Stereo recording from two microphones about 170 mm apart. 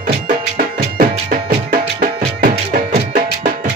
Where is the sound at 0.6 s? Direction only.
55° right (ahead or behind).